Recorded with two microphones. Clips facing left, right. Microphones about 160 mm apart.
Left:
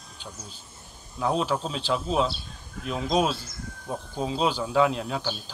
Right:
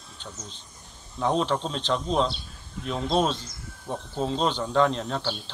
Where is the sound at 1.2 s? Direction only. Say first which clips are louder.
Right 1 dB; 5° left (ahead or behind).